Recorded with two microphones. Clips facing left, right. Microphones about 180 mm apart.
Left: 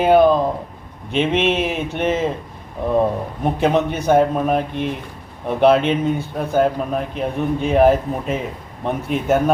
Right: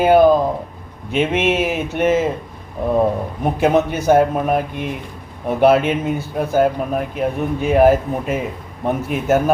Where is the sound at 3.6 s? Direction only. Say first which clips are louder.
Right 3 dB; 5° right (ahead or behind).